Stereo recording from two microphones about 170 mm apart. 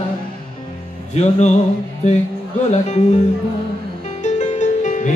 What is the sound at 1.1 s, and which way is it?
Music, 40° left (ahead or behind).